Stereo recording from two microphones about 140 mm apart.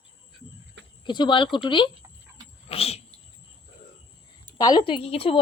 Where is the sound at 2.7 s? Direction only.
45° left (ahead or behind).